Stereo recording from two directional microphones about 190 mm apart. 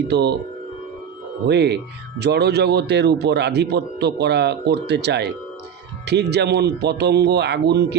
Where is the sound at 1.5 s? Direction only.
60° right (ahead or behind).